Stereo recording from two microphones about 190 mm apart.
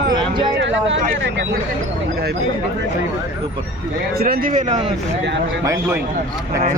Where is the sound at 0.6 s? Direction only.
75° right (ahead or behind).